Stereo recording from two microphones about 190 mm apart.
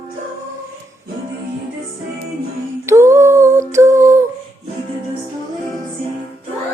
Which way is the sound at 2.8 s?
15° right (ahead or behind).